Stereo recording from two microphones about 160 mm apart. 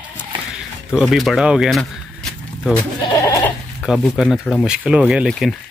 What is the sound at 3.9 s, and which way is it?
Speech, centre (ahead or behind).